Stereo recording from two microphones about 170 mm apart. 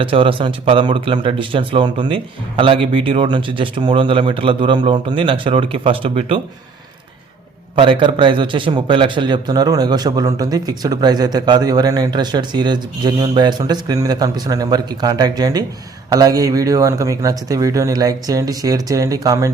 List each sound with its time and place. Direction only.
0.0 s speech: 30° right (ahead or behind)
7.8 s a man's voice: 30° right (ahead or behind)